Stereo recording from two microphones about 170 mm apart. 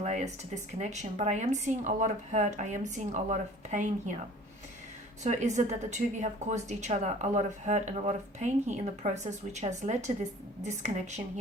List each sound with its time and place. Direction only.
0.0 s a woman's voice: 45° right (ahead or behind)
5.2 s a woman's voice: 45° right (ahead or behind)